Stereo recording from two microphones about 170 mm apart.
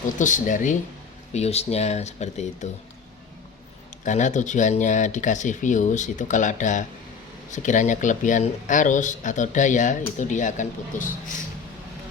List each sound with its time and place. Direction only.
0.2 s speech: 50° left (ahead or behind)
4.0 s speech: 45° left (ahead or behind)